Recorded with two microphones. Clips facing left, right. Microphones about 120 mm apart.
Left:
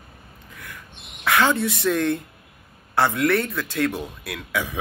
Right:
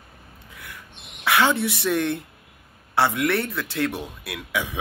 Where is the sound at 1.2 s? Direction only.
20° right (ahead or behind).